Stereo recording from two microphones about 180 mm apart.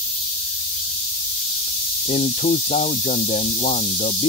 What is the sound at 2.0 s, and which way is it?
Speech, 40° left (ahead or behind).